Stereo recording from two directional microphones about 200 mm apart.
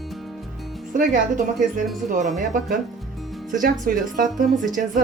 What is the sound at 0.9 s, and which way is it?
A woman's voice, 40° right (ahead or behind).